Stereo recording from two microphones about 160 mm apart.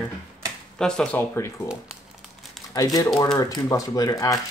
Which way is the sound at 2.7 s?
25° left (ahead or behind).